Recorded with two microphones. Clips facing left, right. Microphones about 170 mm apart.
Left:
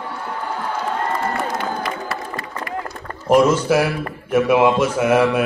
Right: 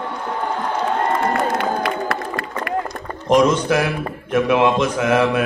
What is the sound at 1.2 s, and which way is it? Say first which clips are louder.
Crowd: right 4 dB; 60° right (ahead or behind).